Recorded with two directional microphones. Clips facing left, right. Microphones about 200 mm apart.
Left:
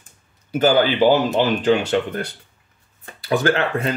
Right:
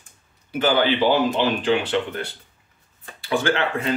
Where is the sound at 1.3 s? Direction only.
45° left (ahead or behind).